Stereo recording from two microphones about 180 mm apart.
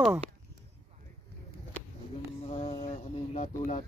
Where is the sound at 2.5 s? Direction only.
35° left (ahead or behind).